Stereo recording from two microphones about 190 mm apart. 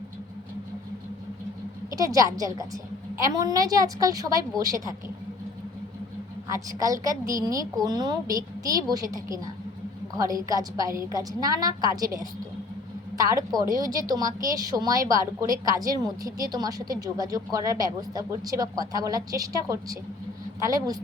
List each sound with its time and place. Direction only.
2.0 s speech: 20° right (ahead or behind)
6.5 s a woman's voice: 20° right (ahead or behind)